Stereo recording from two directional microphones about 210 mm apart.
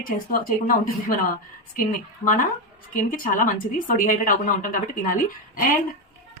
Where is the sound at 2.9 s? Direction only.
40° left (ahead or behind).